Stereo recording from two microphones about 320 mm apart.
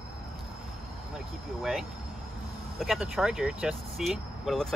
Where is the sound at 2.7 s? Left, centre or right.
Centre.